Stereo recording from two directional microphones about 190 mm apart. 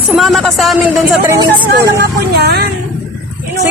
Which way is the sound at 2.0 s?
60° right (ahead or behind).